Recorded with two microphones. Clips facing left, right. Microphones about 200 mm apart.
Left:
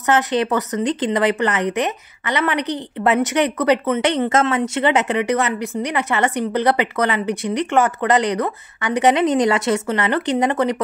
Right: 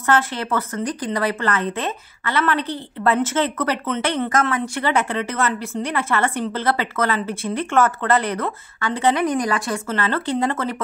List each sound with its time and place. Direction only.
0.0 s speech: 20° left (ahead or behind)